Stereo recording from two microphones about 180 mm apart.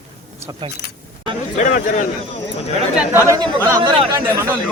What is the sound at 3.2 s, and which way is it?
Speech, 20° right (ahead or behind).